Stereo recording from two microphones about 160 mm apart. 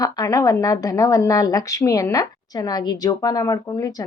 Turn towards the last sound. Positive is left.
turn(degrees=20)  # may be behind; listen again after turning